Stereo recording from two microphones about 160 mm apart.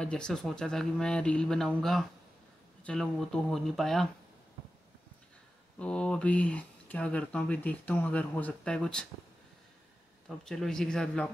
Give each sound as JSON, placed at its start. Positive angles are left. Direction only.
{"t": 0.0, "sound": "speech", "side_deg": 5}
{"t": 5.8, "sound": "speech", "side_deg": 5}
{"t": 10.2, "sound": "speech", "side_deg": 5}